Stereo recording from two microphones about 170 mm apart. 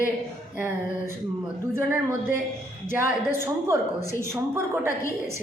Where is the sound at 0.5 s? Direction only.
10° right (ahead or behind).